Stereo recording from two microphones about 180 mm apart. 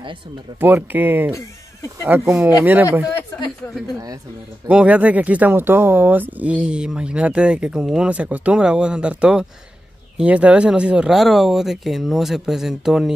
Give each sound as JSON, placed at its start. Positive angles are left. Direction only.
{"t": 0.6, "sound": "speech", "side_deg": -10}
{"t": 3.1, "sound": "a sound", "side_deg": 20}
{"t": 4.6, "sound": "speech", "side_deg": -5}